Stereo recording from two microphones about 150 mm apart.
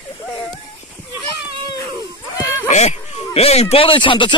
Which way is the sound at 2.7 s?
50° left (ahead or behind).